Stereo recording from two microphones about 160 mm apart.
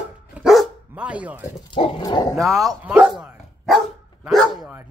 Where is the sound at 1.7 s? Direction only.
30° left (ahead or behind).